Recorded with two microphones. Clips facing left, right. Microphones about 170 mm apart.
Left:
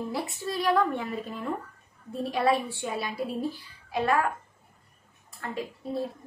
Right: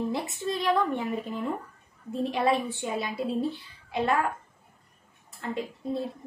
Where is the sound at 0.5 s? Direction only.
20° right (ahead or behind).